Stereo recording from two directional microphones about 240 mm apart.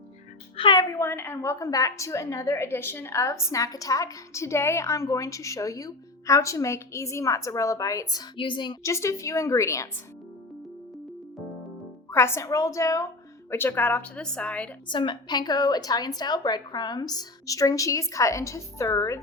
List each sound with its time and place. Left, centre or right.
0.5 s a woman's voice: centre
12.1 s a woman's voice: centre
14.8 s a woman's voice: centre